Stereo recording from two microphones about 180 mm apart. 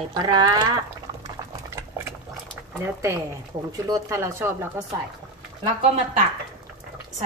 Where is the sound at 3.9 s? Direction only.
15° right (ahead or behind).